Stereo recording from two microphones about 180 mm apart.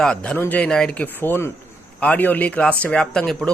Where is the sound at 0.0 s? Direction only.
5° left (ahead or behind).